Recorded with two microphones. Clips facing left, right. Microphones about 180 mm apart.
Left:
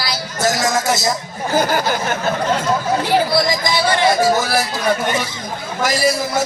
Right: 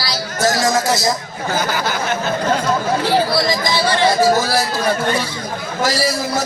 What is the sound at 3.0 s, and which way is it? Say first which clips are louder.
A man's voice: even; 15° left (ahead or behind).